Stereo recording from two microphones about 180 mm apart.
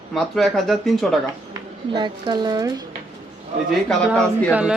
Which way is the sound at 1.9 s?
25° right (ahead or behind).